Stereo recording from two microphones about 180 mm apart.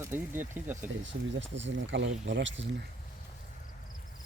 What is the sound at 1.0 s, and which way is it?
Speech, 90° right.